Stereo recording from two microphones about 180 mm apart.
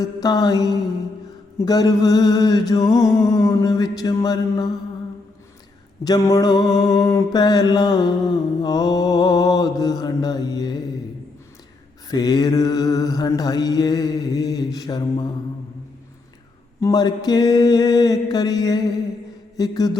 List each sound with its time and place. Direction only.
0.0 s mantra: 20° left (ahead or behind)
6.1 s mantra: 20° left (ahead or behind)
12.0 s mantra: 20° left (ahead or behind)
16.8 s mantra: 20° left (ahead or behind)